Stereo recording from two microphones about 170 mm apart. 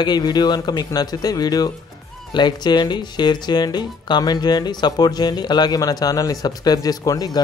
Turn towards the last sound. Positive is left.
turn(degrees=20)  # may be behind; listen again after turning